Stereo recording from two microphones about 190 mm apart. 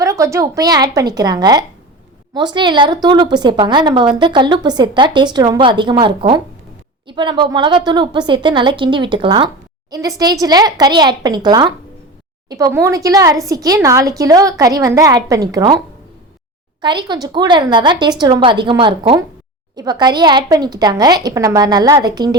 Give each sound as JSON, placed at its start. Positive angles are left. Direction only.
{"t": 0.0, "sound": "a woman's voice", "side_deg": -15}
{"t": 16.8, "sound": "a woman's voice", "side_deg": -25}